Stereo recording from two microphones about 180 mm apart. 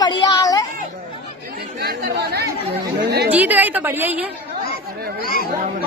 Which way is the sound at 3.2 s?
10° right (ahead or behind).